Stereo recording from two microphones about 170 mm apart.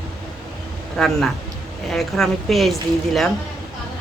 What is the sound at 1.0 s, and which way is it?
A woman's voice, centre (ahead or behind).